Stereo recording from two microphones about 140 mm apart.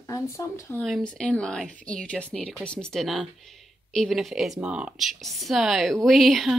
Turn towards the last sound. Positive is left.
turn(degrees=0)  # may be behind; listen again after turning